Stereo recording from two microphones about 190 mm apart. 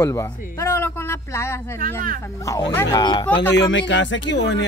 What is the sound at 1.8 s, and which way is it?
Speech, 50° right (ahead or behind).